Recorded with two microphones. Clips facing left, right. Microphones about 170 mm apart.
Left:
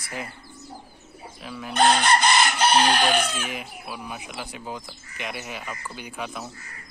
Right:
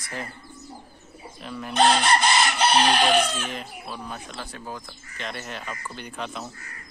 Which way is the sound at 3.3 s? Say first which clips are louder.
Even; 10° left (ahead or behind).